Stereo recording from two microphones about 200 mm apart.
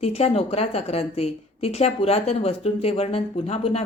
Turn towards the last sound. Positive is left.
turn(degrees=30)  # may be behind; listen again after turning